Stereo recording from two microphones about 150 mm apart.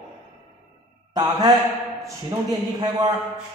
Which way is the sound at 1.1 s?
25° right (ahead or behind).